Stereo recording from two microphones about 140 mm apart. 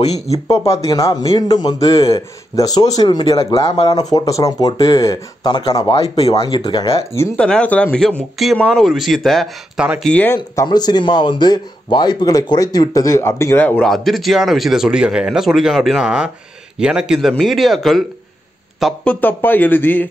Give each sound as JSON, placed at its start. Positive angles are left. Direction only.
{"t": 0.5, "sound": "speech", "side_deg": 25}
{"t": 2.0, "sound": "speech", "side_deg": 40}
{"t": 2.5, "sound": "speech", "side_deg": 25}
{"t": 5.9, "sound": "speech", "side_deg": 50}
{"t": 6.4, "sound": "speech", "side_deg": 35}
{"t": 7.3, "sound": "a man's voice", "side_deg": 5}
{"t": 10.5, "sound": "speech", "side_deg": 25}
{"t": 13.8, "sound": "a man's voice", "side_deg": 0}
{"t": 19.0, "sound": "speech", "side_deg": 15}